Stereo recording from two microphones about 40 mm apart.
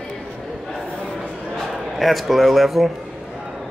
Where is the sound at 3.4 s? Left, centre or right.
Centre.